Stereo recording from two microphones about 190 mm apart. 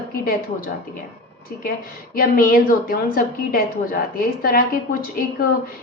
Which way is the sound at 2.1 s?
50° left (ahead or behind).